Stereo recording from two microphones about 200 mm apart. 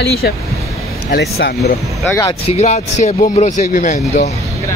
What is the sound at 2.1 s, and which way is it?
Speech, 10° left (ahead or behind).